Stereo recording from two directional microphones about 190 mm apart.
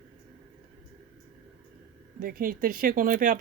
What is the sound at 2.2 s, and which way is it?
Speech, 50° right (ahead or behind).